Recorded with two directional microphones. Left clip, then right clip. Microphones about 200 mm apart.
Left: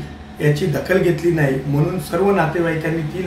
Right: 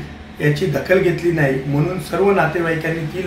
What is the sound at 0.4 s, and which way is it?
Speech, centre (ahead or behind).